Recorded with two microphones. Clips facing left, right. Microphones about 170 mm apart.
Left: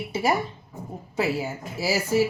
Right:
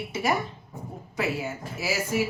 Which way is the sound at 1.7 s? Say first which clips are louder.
Left 5 dB; 30° left (ahead or behind).